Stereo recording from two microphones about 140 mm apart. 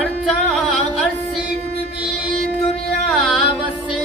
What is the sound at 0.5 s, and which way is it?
Music, centre (ahead or behind).